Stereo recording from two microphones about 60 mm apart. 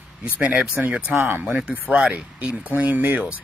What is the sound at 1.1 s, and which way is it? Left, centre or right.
Speech, right.